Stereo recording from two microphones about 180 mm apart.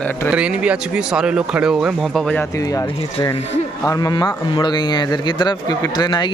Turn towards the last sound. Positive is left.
turn(degrees=25)  # may be behind; listen again after turning